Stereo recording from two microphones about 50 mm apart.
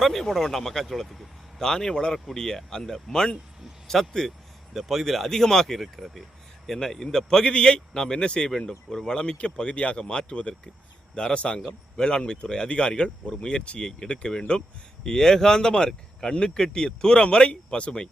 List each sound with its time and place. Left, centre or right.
0.0 s speech: centre
1.6 s speech: centre